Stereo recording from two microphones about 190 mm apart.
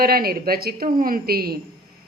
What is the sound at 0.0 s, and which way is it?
A woman's voice, 50° right (ahead or behind).